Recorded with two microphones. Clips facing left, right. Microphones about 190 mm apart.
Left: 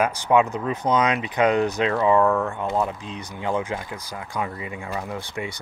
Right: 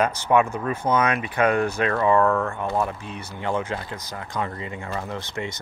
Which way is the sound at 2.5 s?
15° left (ahead or behind).